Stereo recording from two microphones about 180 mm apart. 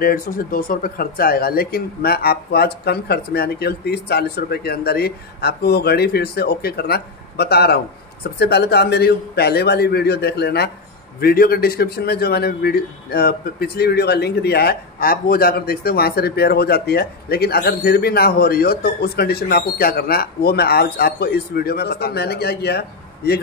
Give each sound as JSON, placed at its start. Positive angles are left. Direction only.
{"t": 0.0, "sound": "a man's voice", "side_deg": 55}